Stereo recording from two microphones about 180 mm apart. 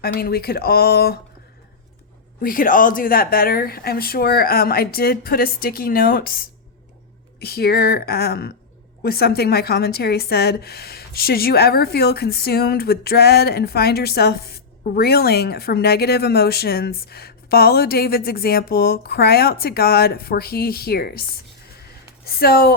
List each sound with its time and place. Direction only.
0.0 s speech: 55° left (ahead or behind)
2.4 s speech: 50° left (ahead or behind)
21.8 s a sound: 60° left (ahead or behind)